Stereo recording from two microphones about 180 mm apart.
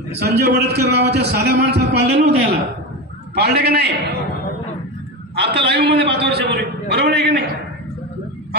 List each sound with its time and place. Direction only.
0.2 s a man's voice: 65° right (ahead or behind)
5.3 s a man's voice: 70° right (ahead or behind)